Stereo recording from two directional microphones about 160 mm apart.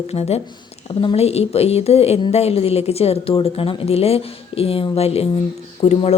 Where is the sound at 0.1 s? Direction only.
40° left (ahead or behind).